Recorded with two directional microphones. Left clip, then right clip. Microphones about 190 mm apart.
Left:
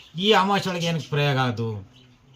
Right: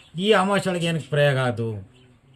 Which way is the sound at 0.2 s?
10° right (ahead or behind).